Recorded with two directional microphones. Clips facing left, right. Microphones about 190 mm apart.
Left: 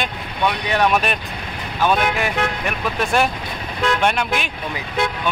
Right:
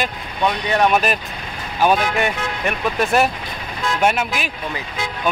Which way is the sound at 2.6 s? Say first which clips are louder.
Right 2 dB; centre (ahead or behind).